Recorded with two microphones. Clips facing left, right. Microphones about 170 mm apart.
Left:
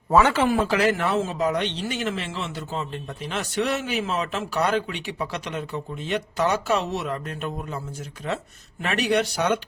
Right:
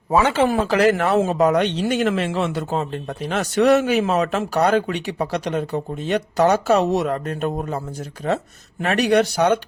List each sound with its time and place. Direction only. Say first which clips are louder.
0.1 s speech: right 1 dB; 20° right (ahead or behind)
0.4 s a man's voice: right 4 dB; 40° right (ahead or behind)
8.8 s a man's voice: right 6 dB; 45° right (ahead or behind)